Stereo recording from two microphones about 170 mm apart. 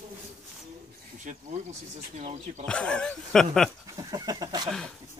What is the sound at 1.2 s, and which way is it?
Speech, 45° right (ahead or behind).